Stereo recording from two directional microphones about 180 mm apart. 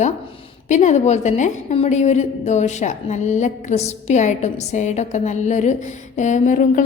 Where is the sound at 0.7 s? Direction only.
40° left (ahead or behind).